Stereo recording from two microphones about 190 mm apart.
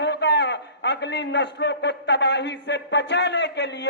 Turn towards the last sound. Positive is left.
turn(degrees=65)  # may be behind; listen again after turning